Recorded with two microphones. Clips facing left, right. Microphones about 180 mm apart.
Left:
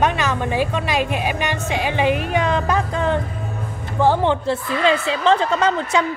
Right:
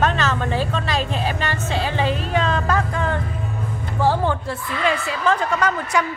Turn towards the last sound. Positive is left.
turn(degrees=25)  # may be behind; listen again after turning